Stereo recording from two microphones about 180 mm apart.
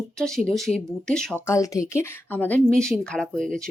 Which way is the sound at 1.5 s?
20° left (ahead or behind).